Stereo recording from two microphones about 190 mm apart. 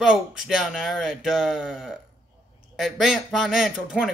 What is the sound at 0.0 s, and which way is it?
A man's voice, centre (ahead or behind).